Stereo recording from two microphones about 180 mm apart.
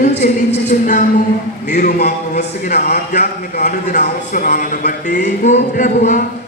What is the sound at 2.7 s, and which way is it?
Speech, 60° left (ahead or behind).